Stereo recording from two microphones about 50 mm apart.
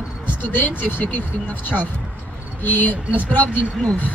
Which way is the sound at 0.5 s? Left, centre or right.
Left.